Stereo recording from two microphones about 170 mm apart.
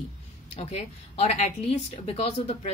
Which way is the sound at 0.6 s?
40° left (ahead or behind).